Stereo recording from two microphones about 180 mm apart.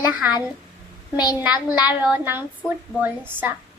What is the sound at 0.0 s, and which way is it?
Speech, 10° right (ahead or behind).